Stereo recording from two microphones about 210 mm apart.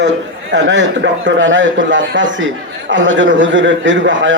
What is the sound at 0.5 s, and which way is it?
A man's voice, 60° right (ahead or behind).